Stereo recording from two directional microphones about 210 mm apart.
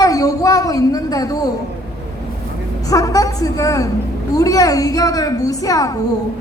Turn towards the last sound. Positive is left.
turn(degrees=15)  # may be behind; listen again after turning